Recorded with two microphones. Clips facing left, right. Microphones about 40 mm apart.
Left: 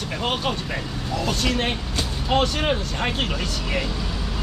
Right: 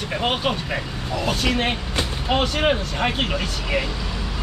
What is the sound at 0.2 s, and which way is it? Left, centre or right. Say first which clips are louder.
Speech: right 2 dB; centre.